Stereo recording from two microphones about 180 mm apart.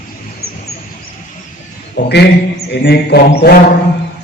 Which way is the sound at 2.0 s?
65° left (ahead or behind).